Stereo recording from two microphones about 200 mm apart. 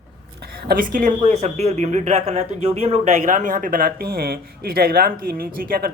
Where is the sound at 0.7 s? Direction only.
45° right (ahead or behind).